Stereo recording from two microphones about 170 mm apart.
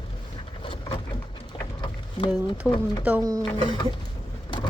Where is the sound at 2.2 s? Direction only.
30° left (ahead or behind).